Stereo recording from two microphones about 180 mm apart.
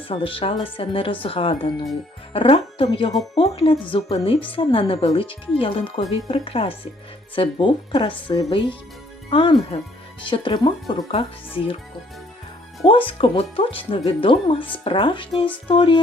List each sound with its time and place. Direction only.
0.1 s speech: 30° left (ahead or behind)
12.8 s speech: 30° left (ahead or behind)